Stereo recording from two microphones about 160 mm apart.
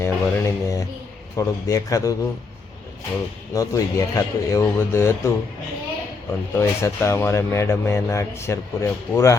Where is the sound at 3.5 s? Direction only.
20° left (ahead or behind).